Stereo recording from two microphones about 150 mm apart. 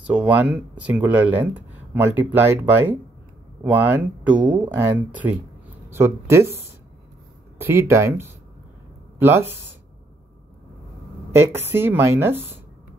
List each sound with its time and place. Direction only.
0.0 s speech: 10° right (ahead or behind)
11.3 s speech: 15° right (ahead or behind)